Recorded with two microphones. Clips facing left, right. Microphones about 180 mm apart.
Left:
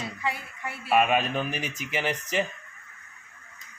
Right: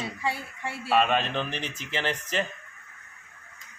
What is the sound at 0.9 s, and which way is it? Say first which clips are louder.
Speech: left 1 dB; 10° left (ahead or behind).